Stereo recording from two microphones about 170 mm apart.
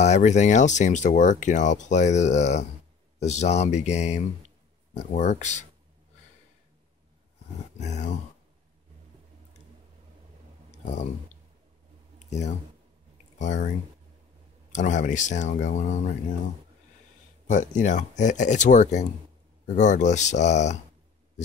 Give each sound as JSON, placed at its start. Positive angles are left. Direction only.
{"t": 0.0, "sound": "speech", "side_deg": 45}
{"t": 7.8, "sound": "speech", "side_deg": 45}
{"t": 12.3, "sound": "speech", "side_deg": 40}
{"t": 14.7, "sound": "speech", "side_deg": 45}
{"t": 17.5, "sound": "speech", "side_deg": 45}